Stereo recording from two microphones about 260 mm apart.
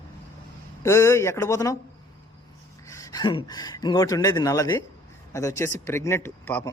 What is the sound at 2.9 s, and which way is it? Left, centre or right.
Speech, centre.